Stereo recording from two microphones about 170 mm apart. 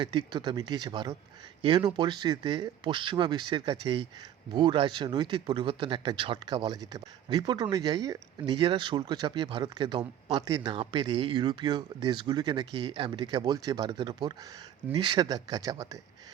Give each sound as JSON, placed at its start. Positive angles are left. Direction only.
{"t": 0.0, "sound": "speech", "side_deg": -25}